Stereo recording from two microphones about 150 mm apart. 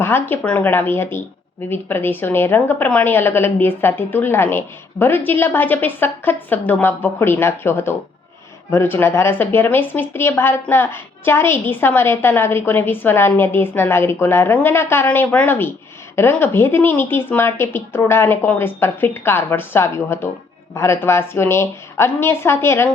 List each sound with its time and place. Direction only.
0.0 s speech: 15° left (ahead or behind)